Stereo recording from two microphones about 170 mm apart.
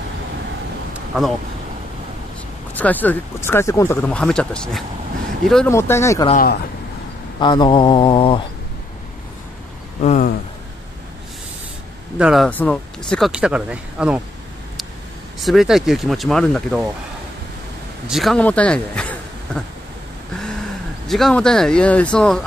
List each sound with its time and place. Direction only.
2.7 s speech: 10° left (ahead or behind)
5.7 s speech: 15° left (ahead or behind)
6.3 s speech: 60° left (ahead or behind)
7.3 s mantra: 25° left (ahead or behind)
10.0 s speech: 45° left (ahead or behind)
12.2 s speech: 5° right (ahead or behind)
13.3 s speech: 5° right (ahead or behind)
15.3 s speech: centre (ahead or behind)
18.0 s a man's voice: centre (ahead or behind)
21.1 s speech: 5° left (ahead or behind)